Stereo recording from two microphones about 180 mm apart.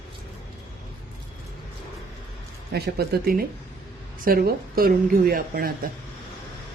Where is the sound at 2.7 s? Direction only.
60° right (ahead or behind).